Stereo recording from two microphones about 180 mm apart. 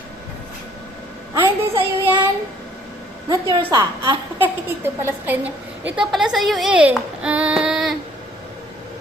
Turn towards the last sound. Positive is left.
turn(degrees=0)  # may be behind; listen again after turning